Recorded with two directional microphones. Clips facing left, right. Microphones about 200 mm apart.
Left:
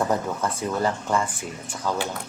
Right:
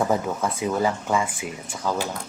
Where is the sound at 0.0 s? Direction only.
5° right (ahead or behind).